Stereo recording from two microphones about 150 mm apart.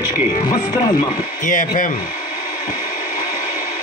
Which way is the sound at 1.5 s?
60° left (ahead or behind).